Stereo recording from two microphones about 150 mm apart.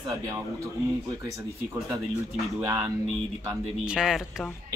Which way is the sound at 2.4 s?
10° right (ahead or behind).